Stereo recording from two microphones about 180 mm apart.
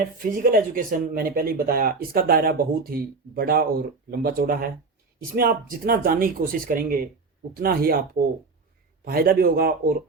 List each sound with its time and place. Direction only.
0.2 s speech: 50° right (ahead or behind)
9.0 s speech: 55° right (ahead or behind)